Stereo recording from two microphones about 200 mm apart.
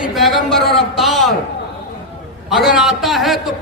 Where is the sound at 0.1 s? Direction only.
Centre (ahead or behind).